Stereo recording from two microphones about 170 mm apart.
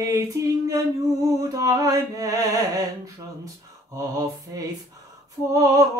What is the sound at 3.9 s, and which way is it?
Speech, 20° right (ahead or behind).